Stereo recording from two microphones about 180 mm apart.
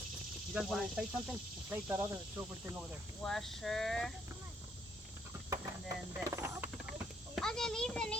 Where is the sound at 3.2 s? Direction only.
Centre (ahead or behind).